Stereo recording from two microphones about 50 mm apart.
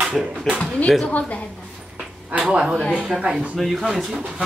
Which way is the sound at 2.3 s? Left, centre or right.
Right.